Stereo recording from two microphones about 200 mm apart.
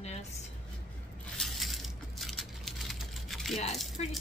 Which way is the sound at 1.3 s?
Centre (ahead or behind).